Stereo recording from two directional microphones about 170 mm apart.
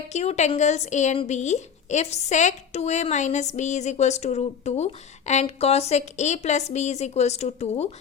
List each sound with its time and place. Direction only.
0.1 s a woman's voice: 40° left (ahead or behind)